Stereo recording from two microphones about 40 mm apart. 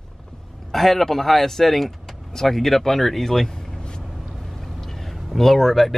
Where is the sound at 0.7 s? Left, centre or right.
Centre.